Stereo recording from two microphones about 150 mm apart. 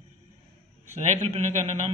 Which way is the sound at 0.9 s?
50° right (ahead or behind).